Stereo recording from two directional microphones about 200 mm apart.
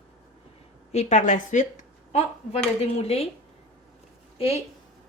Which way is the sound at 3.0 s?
30° left (ahead or behind).